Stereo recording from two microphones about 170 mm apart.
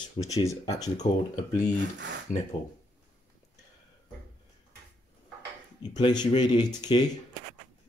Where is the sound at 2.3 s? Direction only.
50° left (ahead or behind).